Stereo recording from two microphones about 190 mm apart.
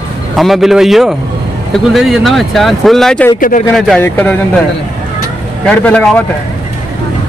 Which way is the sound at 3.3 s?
45° left (ahead or behind).